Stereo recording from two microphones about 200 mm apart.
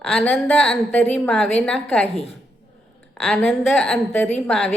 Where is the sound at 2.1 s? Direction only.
30° left (ahead or behind).